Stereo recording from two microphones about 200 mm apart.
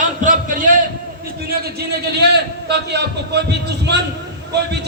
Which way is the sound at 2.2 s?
55° right (ahead or behind).